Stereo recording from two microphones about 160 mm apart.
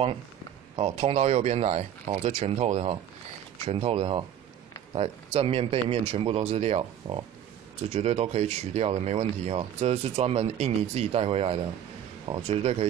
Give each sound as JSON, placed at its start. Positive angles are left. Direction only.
{"t": 0.7, "sound": "speech", "side_deg": -40}